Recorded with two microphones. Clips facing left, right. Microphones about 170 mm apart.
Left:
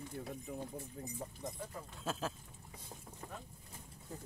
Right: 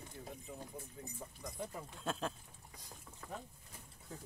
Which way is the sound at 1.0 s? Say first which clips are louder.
Left 5 dB; 35° left (ahead or behind).